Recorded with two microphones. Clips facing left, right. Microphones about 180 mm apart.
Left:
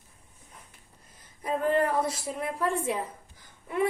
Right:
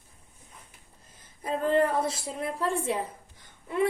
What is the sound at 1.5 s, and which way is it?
A woman's voice, 25° right (ahead or behind).